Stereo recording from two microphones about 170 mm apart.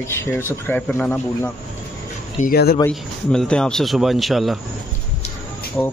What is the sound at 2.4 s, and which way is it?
Speech, 65° left (ahead or behind).